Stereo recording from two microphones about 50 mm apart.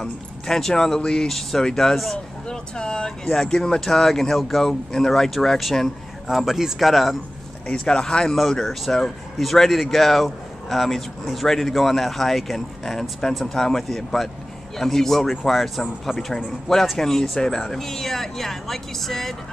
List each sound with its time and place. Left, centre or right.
0.5 s speech: centre
7.6 s speech: centre